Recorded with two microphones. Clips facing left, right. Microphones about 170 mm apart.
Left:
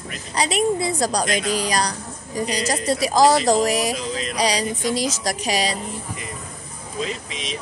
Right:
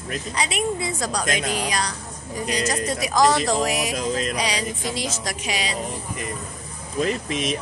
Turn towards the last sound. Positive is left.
turn(degrees=-50)  # may be behind; listen again after turning